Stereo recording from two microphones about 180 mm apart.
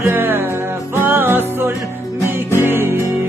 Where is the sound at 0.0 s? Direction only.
10° right (ahead or behind).